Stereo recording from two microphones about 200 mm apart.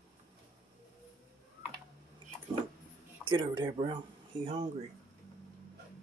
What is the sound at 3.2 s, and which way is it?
Speech, 25° right (ahead or behind).